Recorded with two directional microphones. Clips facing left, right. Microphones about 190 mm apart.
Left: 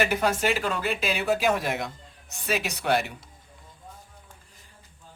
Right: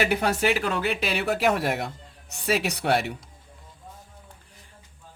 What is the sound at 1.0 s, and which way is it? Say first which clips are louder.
A man's voice: left 1 dB; 65° right (ahead or behind).